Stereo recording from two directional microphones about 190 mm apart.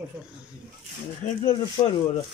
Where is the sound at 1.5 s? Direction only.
25° left (ahead or behind).